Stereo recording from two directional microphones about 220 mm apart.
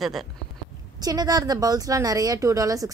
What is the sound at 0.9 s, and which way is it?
A woman's voice, 15° right (ahead or behind).